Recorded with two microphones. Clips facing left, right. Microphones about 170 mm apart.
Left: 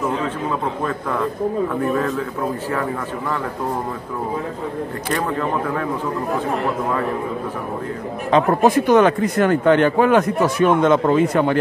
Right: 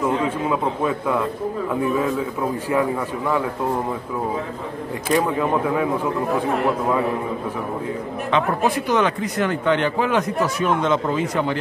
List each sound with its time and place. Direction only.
0.5 s a man's voice: 5° right (ahead or behind)
2.7 s a man's voice: 10° right (ahead or behind)
5.1 s a man's voice: 10° right (ahead or behind)
8.3 s speech: 40° left (ahead or behind)